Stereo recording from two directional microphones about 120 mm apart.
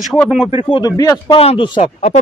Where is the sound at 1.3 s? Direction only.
50° left (ahead or behind).